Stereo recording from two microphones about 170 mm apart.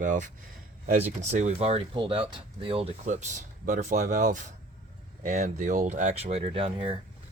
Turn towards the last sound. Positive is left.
turn(degrees=-35)  # may be behind; listen again after turning